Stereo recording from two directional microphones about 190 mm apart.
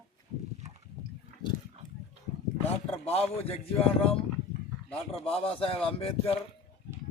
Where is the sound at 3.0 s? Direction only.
30° left (ahead or behind).